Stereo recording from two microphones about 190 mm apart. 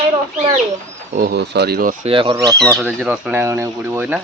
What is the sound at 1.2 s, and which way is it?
Speech, 60° right (ahead or behind).